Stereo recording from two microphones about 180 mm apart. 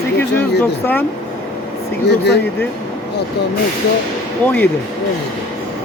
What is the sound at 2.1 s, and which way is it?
Speech, 70° left (ahead or behind).